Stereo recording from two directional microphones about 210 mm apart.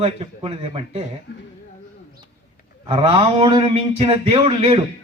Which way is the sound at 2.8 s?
25° right (ahead or behind).